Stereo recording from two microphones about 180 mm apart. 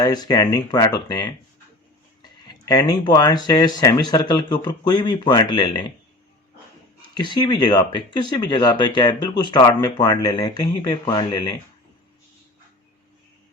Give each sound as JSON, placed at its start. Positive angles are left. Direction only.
{"t": 0.0, "sound": "speech", "side_deg": 20}
{"t": 2.5, "sound": "speech", "side_deg": 20}
{"t": 7.1, "sound": "speech", "side_deg": 25}